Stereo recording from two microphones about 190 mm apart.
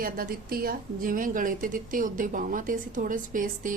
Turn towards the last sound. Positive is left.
turn(degrees=-45)  # may be behind; listen again after turning